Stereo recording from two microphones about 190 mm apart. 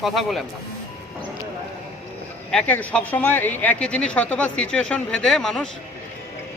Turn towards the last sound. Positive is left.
turn(degrees=5)  # may be behind; listen again after turning